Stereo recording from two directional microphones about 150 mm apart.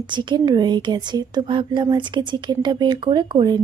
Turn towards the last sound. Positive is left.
turn(degrees=-30)  # may be behind; listen again after turning